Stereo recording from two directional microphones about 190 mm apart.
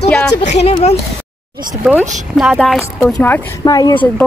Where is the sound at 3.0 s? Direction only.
10° left (ahead or behind).